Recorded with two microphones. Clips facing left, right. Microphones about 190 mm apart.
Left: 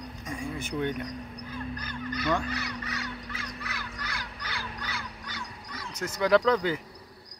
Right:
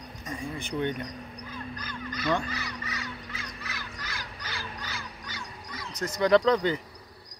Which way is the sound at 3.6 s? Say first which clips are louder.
Left 2 dB; 60° left (ahead or behind).